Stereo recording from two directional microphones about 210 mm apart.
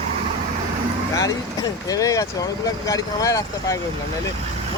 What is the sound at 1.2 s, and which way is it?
Speech, 15° left (ahead or behind).